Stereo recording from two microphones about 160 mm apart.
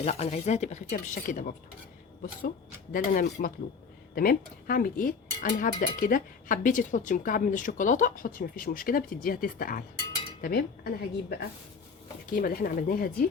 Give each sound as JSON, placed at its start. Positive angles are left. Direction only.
{"t": 0.0, "sound": "speech", "side_deg": 40}
{"t": 2.9, "sound": "a woman's voice", "side_deg": 60}